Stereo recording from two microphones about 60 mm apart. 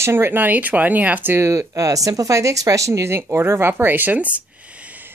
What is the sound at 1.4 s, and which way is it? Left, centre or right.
Speech, right.